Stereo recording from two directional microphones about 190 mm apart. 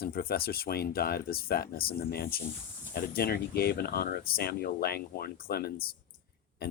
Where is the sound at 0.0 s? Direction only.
50° left (ahead or behind).